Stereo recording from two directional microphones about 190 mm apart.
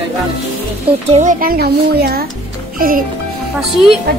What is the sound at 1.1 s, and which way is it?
Speech, 40° right (ahead or behind).